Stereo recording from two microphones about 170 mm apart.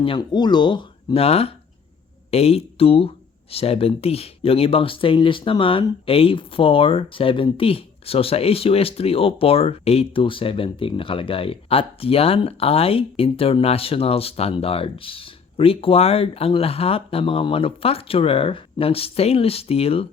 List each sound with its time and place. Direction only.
0.0 s speech: 30° left (ahead or behind)